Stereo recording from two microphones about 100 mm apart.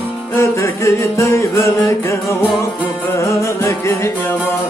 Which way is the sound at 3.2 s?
30° left (ahead or behind).